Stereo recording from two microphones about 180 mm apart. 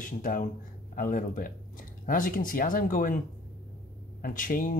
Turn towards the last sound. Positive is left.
turn(degrees=50)  # may be behind; listen again after turning